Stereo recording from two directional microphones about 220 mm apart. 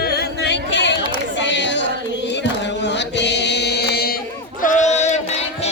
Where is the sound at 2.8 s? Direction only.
50° left (ahead or behind).